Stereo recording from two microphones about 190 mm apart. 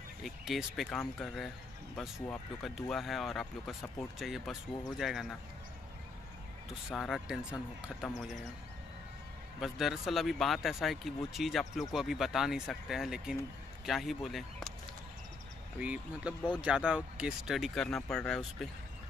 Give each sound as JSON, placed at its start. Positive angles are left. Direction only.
{"t": 0.2, "sound": "speech", "side_deg": 0}
{"t": 2.6, "sound": "speech", "side_deg": 0}
{"t": 6.9, "sound": "speech", "side_deg": 0}
{"t": 9.6, "sound": "speech", "side_deg": 0}
{"t": 15.8, "sound": "speech", "side_deg": -5}